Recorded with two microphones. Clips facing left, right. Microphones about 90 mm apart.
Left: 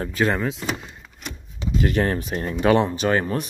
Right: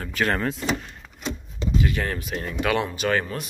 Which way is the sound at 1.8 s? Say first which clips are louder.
Left 5 dB; 40° left (ahead or behind).